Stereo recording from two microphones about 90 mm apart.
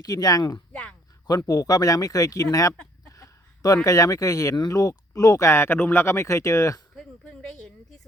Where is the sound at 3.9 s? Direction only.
40° left (ahead or behind).